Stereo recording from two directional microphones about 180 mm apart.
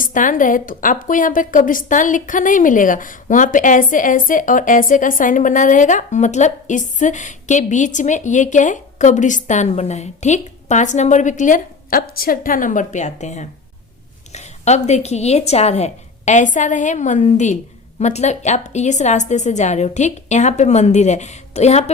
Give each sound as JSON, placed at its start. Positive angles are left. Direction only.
{"t": 0.0, "sound": "a woman's voice", "side_deg": 45}
{"t": 14.3, "sound": "a sound", "side_deg": 40}
{"t": 14.8, "sound": "a woman's voice", "side_deg": 40}